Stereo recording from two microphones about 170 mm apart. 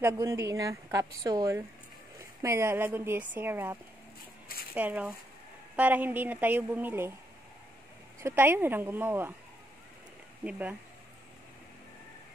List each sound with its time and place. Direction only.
0.0 s a woman's voice: 15° right (ahead or behind)
4.7 s a woman's voice: 10° right (ahead or behind)
8.2 s a woman's voice: 15° right (ahead or behind)
10.4 s a woman's voice: 10° right (ahead or behind)